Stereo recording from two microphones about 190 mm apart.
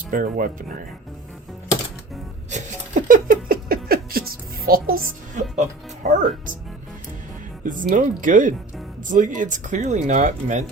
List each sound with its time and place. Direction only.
0.1 s speech: 45° right (ahead or behind)
2.5 s a sound: 40° right (ahead or behind)
3.8 s a woman's voice: 50° right (ahead or behind)
7.6 s speech: 45° right (ahead or behind)